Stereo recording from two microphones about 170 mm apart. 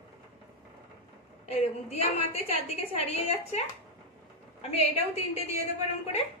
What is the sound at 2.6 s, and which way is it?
Speech, 40° left (ahead or behind).